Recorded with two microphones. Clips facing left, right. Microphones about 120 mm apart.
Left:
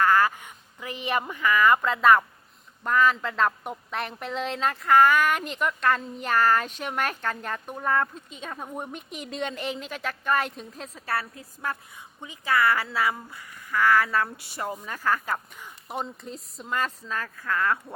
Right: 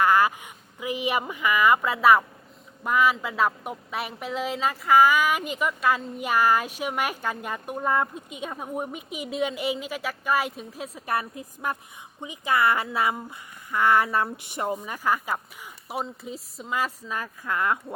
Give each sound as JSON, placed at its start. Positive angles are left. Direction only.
{"t": 0.0, "sound": "a woman's voice", "side_deg": -15}